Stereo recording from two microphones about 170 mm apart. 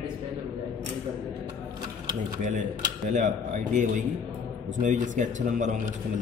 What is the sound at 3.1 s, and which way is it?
Speech, 50° right (ahead or behind).